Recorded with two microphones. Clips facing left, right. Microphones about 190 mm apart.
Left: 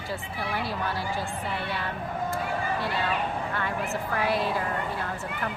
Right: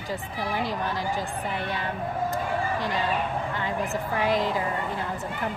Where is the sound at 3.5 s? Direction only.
20° right (ahead or behind).